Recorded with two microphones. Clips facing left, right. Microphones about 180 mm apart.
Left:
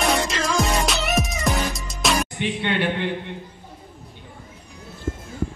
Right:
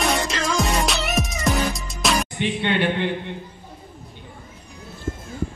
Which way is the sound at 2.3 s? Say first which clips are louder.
Right 2 dB; 25° right (ahead or behind).